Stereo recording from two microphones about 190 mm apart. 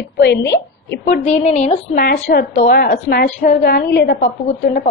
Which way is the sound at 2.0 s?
55° left (ahead or behind).